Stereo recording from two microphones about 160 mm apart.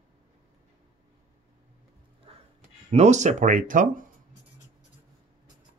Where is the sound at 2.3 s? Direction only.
35° right (ahead or behind).